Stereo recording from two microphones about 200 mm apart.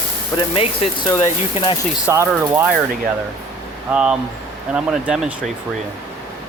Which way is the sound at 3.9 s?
5° right (ahead or behind).